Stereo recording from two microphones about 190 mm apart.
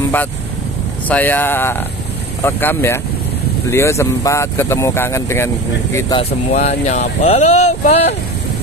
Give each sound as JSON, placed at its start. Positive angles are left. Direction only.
{"t": 1.0, "sound": "speech", "side_deg": 10}
{"t": 6.5, "sound": "speech", "side_deg": 35}